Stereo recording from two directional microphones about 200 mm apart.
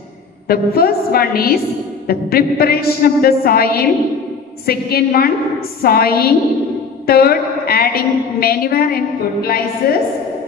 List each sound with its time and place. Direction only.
0.5 s a woman's voice: 50° left (ahead or behind)